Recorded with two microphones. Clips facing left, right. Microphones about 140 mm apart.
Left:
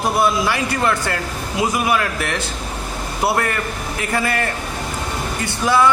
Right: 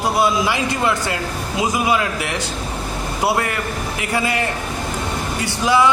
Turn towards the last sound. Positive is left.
turn(degrees=-15)  # may be behind; listen again after turning